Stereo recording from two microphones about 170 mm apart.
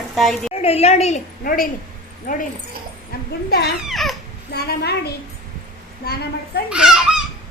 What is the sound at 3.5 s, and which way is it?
Speech, 70° left (ahead or behind).